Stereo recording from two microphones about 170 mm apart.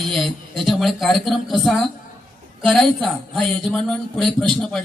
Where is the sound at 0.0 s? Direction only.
Centre (ahead or behind).